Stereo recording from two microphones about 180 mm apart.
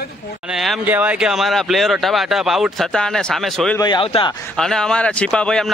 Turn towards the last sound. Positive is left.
turn(degrees=5)  # may be behind; listen again after turning